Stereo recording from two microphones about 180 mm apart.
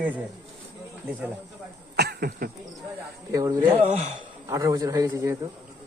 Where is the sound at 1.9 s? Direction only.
65° right (ahead or behind).